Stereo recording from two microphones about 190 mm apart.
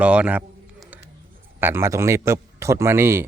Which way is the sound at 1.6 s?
15° right (ahead or behind).